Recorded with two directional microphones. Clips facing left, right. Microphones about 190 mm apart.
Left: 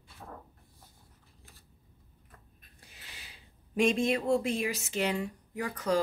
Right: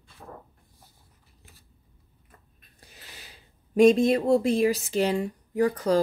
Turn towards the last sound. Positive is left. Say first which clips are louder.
# right 8 dB
turn(degrees=-35)  # may be behind; listen again after turning